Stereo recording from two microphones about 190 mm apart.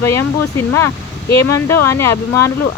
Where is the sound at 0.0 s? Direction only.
15° left (ahead or behind).